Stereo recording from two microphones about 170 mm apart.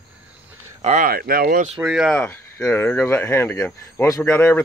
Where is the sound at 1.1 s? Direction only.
60° right (ahead or behind).